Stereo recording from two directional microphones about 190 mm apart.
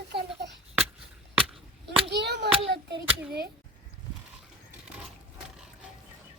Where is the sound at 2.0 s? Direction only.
65° right (ahead or behind).